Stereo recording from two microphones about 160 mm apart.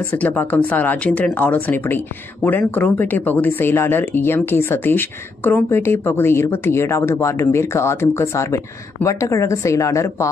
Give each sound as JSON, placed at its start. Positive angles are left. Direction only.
{"t": 0.1, "sound": "speech", "side_deg": 10}